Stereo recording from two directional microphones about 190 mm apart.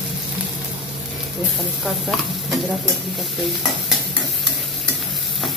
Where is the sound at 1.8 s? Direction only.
Centre (ahead or behind).